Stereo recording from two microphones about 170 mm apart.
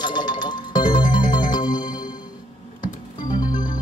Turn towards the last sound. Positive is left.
turn(degrees=25)  # may be behind; listen again after turning